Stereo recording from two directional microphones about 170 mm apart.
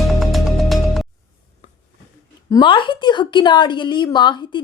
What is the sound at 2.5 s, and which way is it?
A woman's voice, 30° left (ahead or behind).